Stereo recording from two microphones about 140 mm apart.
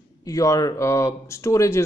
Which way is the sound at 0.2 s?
25° left (ahead or behind).